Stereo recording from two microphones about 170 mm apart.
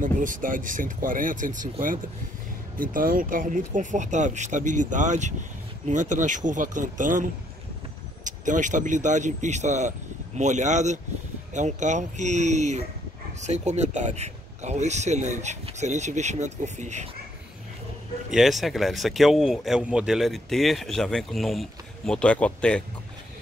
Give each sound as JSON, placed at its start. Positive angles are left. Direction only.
{"t": 0.0, "sound": "speech", "side_deg": -50}
{"t": 18.3, "sound": "speech", "side_deg": 0}